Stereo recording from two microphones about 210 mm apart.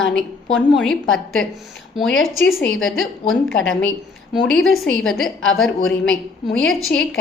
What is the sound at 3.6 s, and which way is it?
Speech, 65° left (ahead or behind).